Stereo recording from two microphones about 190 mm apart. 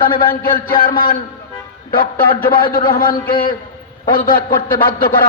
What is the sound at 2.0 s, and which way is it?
A man's voice, 50° left (ahead or behind).